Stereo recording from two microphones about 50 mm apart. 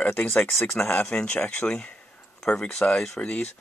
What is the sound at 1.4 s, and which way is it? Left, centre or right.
Speech, left.